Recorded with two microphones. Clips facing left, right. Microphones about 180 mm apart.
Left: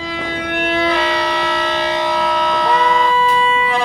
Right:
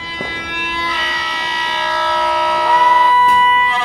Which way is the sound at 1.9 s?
15° left (ahead or behind).